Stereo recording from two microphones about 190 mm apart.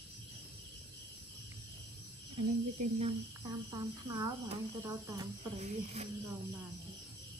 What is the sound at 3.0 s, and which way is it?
Speech, 30° right (ahead or behind).